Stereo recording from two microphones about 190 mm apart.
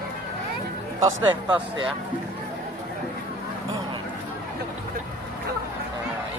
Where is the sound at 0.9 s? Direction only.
15° right (ahead or behind).